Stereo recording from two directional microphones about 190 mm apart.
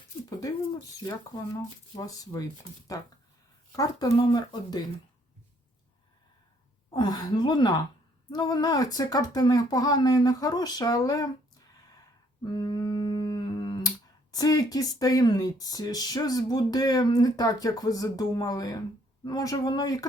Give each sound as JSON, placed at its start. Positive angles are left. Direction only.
{"t": 0.3, "sound": "speech", "side_deg": 20}
{"t": 2.0, "sound": "speech", "side_deg": 20}
{"t": 6.9, "sound": "speech", "side_deg": 20}
{"t": 12.5, "sound": "humming", "side_deg": 20}
{"t": 14.3, "sound": "speech", "side_deg": 20}